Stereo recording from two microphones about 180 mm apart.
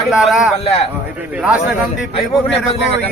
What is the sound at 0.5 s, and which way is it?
Speech, 35° left (ahead or behind).